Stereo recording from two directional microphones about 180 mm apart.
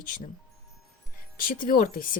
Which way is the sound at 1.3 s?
50° left (ahead or behind).